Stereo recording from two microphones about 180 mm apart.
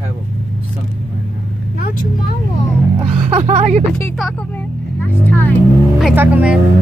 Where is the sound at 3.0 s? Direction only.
35° right (ahead or behind).